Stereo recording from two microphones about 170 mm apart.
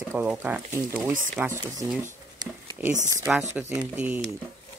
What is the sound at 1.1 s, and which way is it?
Speech, 50° right (ahead or behind).